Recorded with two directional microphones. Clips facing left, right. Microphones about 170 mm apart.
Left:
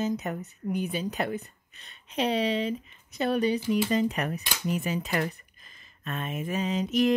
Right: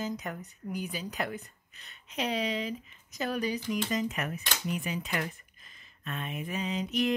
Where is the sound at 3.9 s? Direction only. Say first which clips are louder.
Left 5 dB; 35° left (ahead or behind).